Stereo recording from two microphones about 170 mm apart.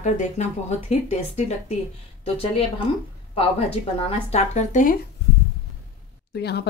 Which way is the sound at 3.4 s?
35° left (ahead or behind).